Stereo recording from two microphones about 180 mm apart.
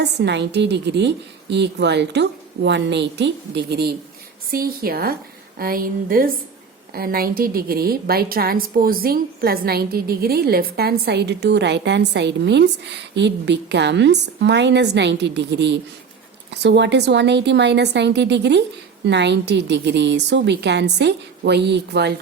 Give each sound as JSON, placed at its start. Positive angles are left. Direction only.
{"t": 0.0, "sound": "a woman's voice", "side_deg": -70}